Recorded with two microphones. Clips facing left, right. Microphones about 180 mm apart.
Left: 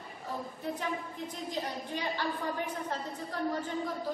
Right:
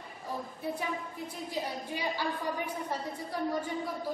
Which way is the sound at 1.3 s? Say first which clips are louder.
Right 1 dB; 10° right (ahead or behind).